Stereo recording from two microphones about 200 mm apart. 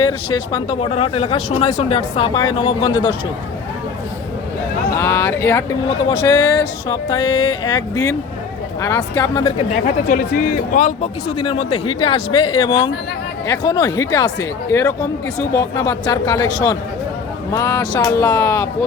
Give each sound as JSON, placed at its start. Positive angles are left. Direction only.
{"t": 0.0, "sound": "speech", "side_deg": 25}
{"t": 4.9, "sound": "speech", "side_deg": 15}
{"t": 9.8, "sound": "speech", "side_deg": 40}
{"t": 17.5, "sound": "speech", "side_deg": 15}